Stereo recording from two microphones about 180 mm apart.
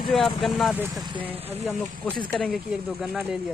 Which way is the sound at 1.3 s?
10° right (ahead or behind).